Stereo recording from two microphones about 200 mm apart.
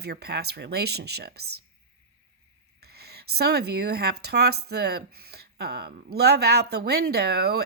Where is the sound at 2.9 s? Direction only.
55° right (ahead or behind).